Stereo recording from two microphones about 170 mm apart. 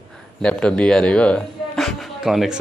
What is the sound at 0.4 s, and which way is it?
Speech, 5° left (ahead or behind).